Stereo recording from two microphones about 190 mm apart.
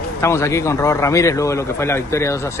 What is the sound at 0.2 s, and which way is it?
Speech, 15° left (ahead or behind).